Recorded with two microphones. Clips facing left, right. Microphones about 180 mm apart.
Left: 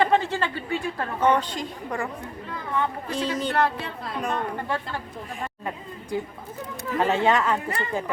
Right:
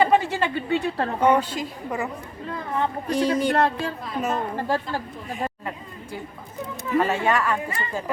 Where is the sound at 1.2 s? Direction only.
10° right (ahead or behind).